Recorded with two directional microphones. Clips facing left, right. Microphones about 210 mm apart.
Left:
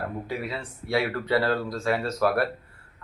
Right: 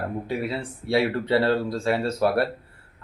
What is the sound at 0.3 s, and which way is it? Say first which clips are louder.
Speech: right 4 dB; 30° right (ahead or behind).